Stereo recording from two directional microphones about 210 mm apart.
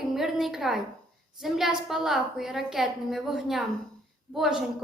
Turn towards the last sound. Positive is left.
turn(degrees=0)  # may be behind; listen again after turning